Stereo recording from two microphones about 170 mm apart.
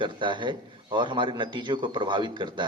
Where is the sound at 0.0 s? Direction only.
30° right (ahead or behind).